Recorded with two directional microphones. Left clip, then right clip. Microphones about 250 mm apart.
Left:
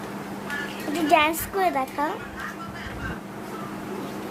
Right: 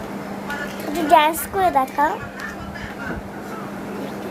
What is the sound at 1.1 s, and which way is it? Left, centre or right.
A child's voice, centre.